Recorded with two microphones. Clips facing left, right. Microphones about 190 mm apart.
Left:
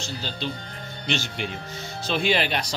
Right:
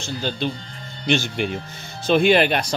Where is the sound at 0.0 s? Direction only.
55° right (ahead or behind).